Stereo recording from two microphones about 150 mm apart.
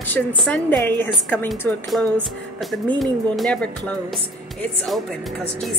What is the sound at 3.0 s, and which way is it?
Speech, centre (ahead or behind).